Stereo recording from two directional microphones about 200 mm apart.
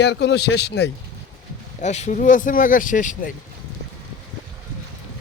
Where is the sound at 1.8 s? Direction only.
35° left (ahead or behind).